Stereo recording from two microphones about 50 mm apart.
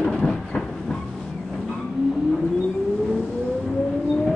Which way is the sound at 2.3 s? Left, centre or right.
Centre.